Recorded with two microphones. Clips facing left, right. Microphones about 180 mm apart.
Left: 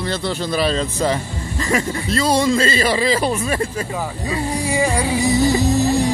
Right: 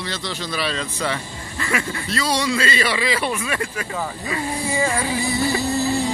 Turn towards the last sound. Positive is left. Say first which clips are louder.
# left 4 dB
turn(degrees=20)  # may be behind; listen again after turning